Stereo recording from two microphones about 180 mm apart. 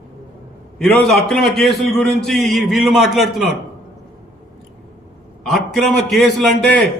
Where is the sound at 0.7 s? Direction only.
5° left (ahead or behind).